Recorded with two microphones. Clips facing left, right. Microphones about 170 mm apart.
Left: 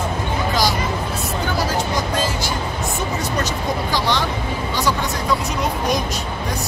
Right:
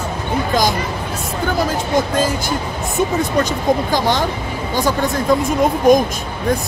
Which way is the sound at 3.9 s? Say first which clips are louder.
Right 4 dB; 45° right (ahead or behind).